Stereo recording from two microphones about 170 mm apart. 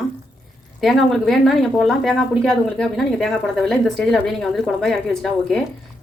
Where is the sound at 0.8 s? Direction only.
Centre (ahead or behind).